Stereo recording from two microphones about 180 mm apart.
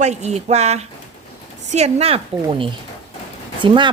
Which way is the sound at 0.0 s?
40° right (ahead or behind).